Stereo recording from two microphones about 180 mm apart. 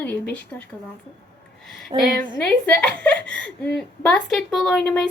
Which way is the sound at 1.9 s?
35° right (ahead or behind).